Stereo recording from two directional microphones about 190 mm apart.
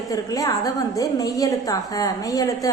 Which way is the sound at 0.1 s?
20° left (ahead or behind).